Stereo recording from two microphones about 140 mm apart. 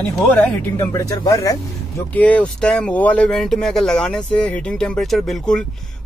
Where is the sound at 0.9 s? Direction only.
25° left (ahead or behind).